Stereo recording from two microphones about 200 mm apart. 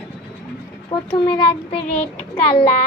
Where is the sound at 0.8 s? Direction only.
25° left (ahead or behind).